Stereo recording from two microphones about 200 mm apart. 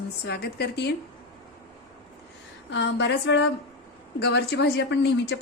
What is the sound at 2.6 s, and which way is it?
A woman's voice, 60° left (ahead or behind).